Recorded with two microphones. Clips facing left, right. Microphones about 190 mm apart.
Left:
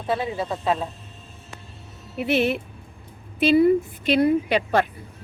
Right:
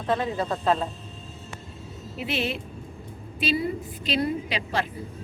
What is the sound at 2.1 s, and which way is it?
A woman's voice, 60° left (ahead or behind).